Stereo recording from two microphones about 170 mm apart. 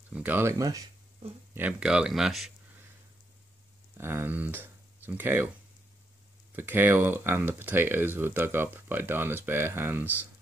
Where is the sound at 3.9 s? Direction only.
15° right (ahead or behind).